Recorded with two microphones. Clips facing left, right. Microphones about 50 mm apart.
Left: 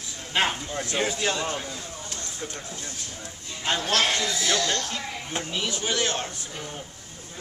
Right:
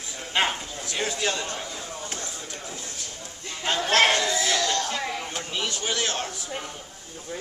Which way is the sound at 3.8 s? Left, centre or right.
Right.